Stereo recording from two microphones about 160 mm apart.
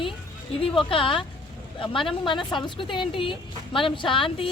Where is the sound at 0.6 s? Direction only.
35° left (ahead or behind).